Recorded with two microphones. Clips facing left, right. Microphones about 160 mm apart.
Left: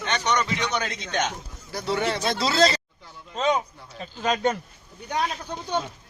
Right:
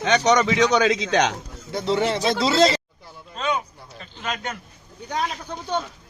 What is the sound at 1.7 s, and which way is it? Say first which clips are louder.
Speech: right 4 dB; 25° right (ahead or behind).